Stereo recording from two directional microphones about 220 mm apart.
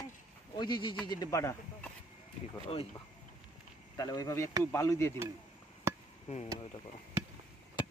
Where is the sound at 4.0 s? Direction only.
15° left (ahead or behind).